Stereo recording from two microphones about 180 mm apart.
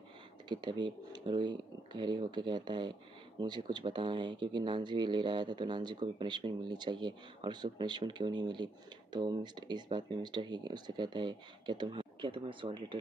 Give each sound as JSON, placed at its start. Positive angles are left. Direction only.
{"t": 0.5, "sound": "speech", "side_deg": -25}